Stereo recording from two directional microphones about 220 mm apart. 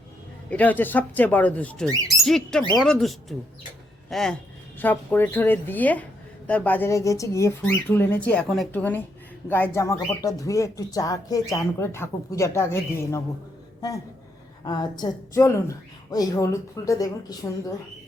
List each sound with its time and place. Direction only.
0.5 s a woman's voice: 5° left (ahead or behind)
14.6 s a woman's voice: 20° left (ahead or behind)